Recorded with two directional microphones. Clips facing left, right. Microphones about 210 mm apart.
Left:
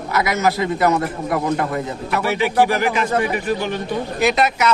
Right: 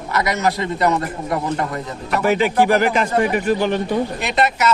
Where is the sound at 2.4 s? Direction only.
50° right (ahead or behind).